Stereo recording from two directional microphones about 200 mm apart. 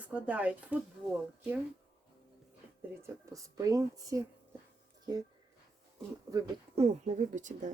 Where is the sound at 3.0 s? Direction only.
15° right (ahead or behind).